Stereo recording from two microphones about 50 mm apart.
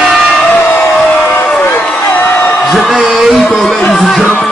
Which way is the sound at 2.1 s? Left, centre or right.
Left.